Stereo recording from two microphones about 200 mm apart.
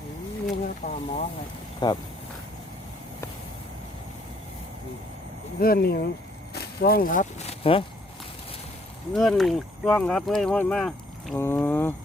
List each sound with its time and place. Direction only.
0.6 s speech: 35° left (ahead or behind)
1.8 s speech: 20° left (ahead or behind)
5.5 s speech: 50° left (ahead or behind); by 7.9 s 25° left (ahead or behind)
9.1 s speech: centre (ahead or behind)